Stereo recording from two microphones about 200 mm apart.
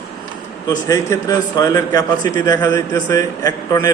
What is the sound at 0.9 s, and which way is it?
A man's voice, 15° left (ahead or behind).